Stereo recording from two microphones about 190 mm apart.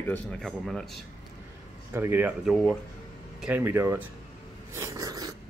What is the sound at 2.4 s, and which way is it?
Speech, centre (ahead or behind).